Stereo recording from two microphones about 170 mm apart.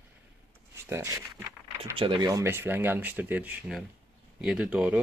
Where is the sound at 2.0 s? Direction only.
30° right (ahead or behind).